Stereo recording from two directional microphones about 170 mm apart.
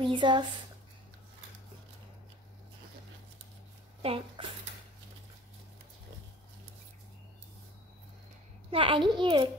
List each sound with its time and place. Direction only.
0.0 s speech: 30° right (ahead or behind)
4.0 s speech: 35° right (ahead or behind)
8.6 s a child's voice: 30° right (ahead or behind)